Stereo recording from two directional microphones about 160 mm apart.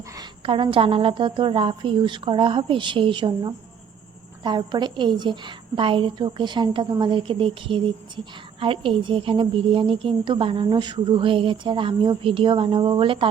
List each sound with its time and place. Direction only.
0.2 s a woman's voice: 30° right (ahead or behind)